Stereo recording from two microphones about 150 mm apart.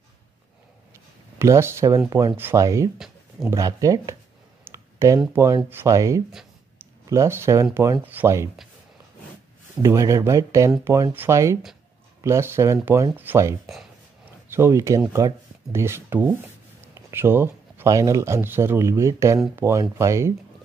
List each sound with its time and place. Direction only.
1.4 s speech: 15° right (ahead or behind)
4.6 s clicking: 20° right (ahead or behind)
5.2 s speech: 15° right (ahead or behind)
9.8 s speech: 20° right (ahead or behind)